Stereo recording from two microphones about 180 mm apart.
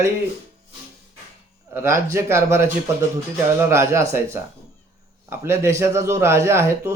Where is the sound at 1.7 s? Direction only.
10° right (ahead or behind).